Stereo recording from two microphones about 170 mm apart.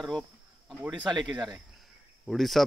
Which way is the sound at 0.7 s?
5° right (ahead or behind).